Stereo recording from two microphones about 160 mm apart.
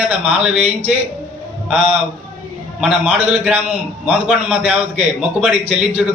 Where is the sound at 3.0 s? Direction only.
5° right (ahead or behind).